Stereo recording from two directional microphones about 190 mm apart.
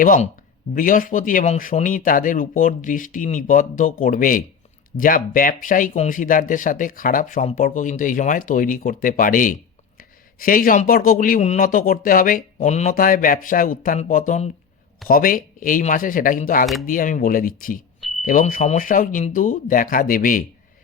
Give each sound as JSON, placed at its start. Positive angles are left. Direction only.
{"t": 0.0, "sound": "speech", "side_deg": 45}